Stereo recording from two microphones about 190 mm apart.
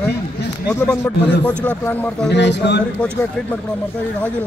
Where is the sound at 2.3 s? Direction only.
65° left (ahead or behind).